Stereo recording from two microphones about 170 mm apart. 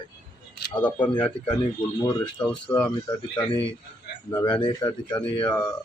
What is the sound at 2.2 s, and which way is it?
Speech, 5° left (ahead or behind).